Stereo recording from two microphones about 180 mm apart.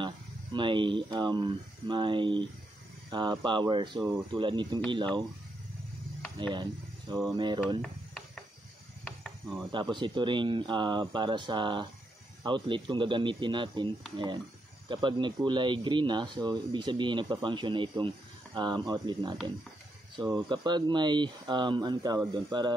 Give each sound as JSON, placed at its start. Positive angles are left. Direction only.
{"t": 0.0, "sound": "speech", "side_deg": -25}
{"t": 6.5, "sound": "speech", "side_deg": -25}
{"t": 9.7, "sound": "speech", "side_deg": -25}